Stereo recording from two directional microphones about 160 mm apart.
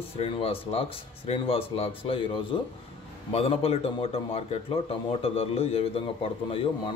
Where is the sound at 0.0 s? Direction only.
40° left (ahead or behind).